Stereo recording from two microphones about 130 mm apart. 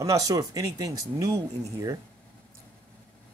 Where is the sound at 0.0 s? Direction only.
25° right (ahead or behind).